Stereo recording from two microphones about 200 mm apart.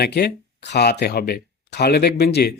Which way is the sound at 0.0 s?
55° left (ahead or behind).